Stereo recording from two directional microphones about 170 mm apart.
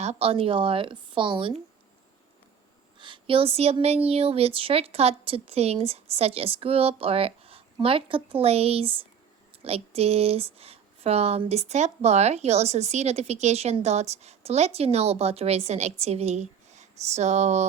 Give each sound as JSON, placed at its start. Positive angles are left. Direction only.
{"t": 0.0, "sound": "speech", "side_deg": -40}
{"t": 3.0, "sound": "speech", "side_deg": -30}